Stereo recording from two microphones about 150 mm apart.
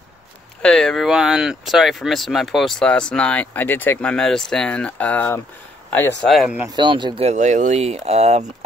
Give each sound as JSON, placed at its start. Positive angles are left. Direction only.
{"t": 0.6, "sound": "speech", "side_deg": 5}
{"t": 6.2, "sound": "speech", "side_deg": 0}
{"t": 6.7, "sound": "speech", "side_deg": -30}
{"t": 7.2, "sound": "speech", "side_deg": -55}